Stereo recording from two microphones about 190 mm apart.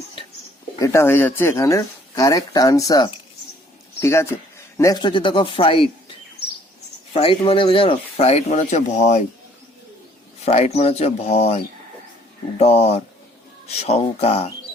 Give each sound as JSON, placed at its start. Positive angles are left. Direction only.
{"t": 0.8, "sound": "a man's voice", "side_deg": 15}
{"t": 7.1, "sound": "speech", "side_deg": 30}
{"t": 10.4, "sound": "speech", "side_deg": 35}